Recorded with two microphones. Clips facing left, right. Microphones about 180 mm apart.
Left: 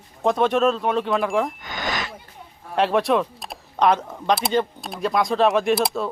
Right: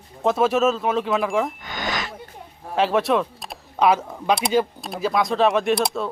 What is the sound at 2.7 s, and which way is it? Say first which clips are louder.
Speech: even; centre (ahead or behind).